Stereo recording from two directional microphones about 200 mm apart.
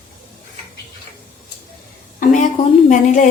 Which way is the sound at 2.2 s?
40° left (ahead or behind).